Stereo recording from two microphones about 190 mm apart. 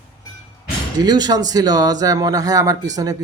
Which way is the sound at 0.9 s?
20° right (ahead or behind).